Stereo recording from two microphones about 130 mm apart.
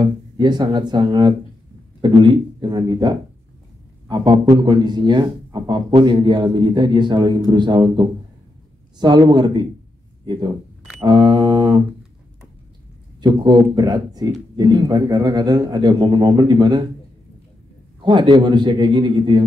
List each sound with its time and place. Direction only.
0.0 s a man's voice: 35° right (ahead or behind)
11.1 s a sound: 35° right (ahead or behind)
13.2 s a man's voice: 35° right (ahead or behind)
18.0 s a man's voice: 35° right (ahead or behind)